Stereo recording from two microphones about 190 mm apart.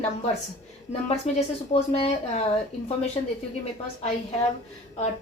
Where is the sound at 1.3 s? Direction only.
35° left (ahead or behind).